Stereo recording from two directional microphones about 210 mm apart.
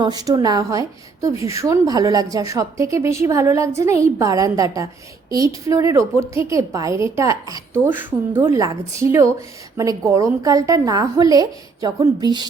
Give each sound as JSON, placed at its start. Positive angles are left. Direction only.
{"t": 0.0, "sound": "a woman's voice", "side_deg": -20}